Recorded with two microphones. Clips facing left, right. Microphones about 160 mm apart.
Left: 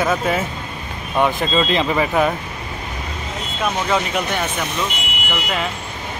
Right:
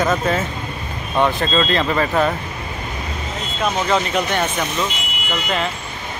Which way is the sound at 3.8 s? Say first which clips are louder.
Right 1 dB; 5° left (ahead or behind).